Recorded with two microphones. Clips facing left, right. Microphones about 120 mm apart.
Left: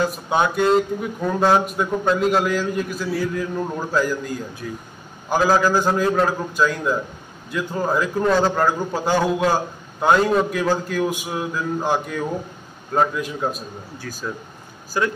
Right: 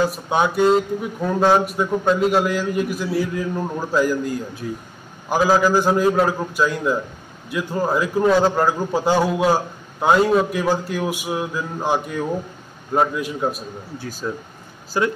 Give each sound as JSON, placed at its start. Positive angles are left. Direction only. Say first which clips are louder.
{"t": 0.1, "sound": "speech", "louder": "even", "side_deg": 0}
{"t": 5.3, "sound": "speech", "louder": "right 1 dB", "side_deg": -5}
{"t": 14.2, "sound": "speech", "louder": "right 3 dB", "side_deg": -25}